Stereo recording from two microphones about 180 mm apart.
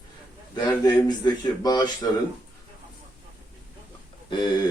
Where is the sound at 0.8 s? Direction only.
20° left (ahead or behind).